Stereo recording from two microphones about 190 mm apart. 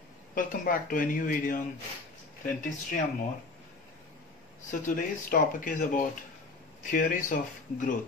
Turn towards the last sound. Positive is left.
turn(degrees=45)  # may be behind; listen again after turning